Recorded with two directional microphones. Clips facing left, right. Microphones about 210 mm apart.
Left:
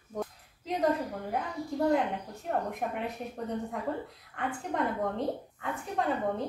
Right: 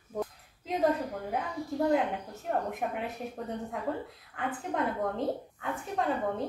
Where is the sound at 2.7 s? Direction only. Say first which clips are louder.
Even; centre (ahead or behind).